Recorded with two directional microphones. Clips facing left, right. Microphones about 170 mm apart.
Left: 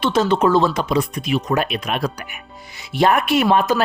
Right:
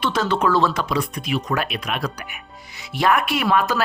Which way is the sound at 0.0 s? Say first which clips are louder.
Left 4 dB; 25° left (ahead or behind).